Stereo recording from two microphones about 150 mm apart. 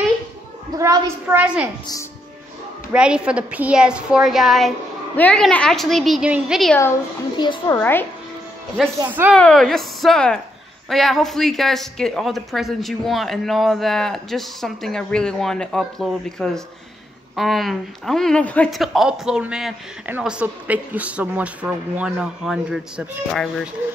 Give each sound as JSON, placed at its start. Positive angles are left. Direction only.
{"t": 0.7, "sound": "a woman's voice", "side_deg": -20}
{"t": 1.4, "sound": "a woman's voice", "side_deg": -5}
{"t": 2.9, "sound": "speech", "side_deg": -5}
{"t": 7.3, "sound": "a woman's voice", "side_deg": 30}
{"t": 7.8, "sound": "speech", "side_deg": 15}
{"t": 9.3, "sound": "speech", "side_deg": 5}